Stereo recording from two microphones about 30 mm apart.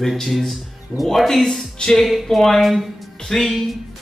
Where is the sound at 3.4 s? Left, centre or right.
Centre.